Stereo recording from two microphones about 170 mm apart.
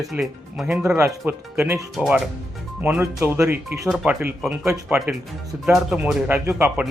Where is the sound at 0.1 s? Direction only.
Centre (ahead or behind).